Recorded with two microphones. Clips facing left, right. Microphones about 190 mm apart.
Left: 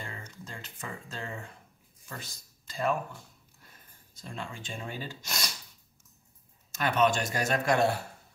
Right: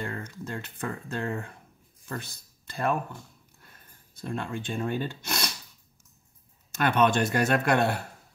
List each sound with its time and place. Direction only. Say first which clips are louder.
0.5 s speech: right 8 dB; 60° right (ahead or behind)
4.1 s speech: right 8 dB; 60° right (ahead or behind)
6.7 s speech: right 3 dB; 60° right (ahead or behind)